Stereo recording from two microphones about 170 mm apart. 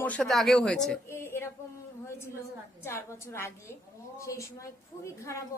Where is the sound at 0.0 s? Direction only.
5° left (ahead or behind).